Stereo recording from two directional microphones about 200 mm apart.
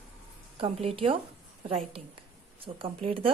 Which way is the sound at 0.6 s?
30° right (ahead or behind).